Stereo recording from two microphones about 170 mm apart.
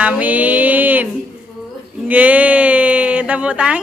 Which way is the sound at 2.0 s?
10° right (ahead or behind).